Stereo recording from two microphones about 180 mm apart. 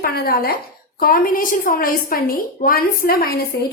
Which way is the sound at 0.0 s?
60° left (ahead or behind).